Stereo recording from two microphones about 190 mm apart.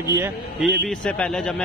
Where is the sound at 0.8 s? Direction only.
5° left (ahead or behind).